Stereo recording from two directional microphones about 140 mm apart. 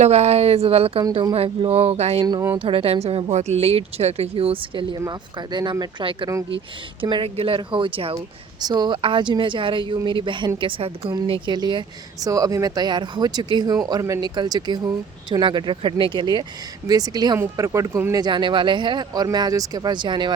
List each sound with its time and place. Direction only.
0.0 s speech: 50° right (ahead or behind)
2.2 s speech: 25° right (ahead or behind)
2.6 s speech: 40° right (ahead or behind)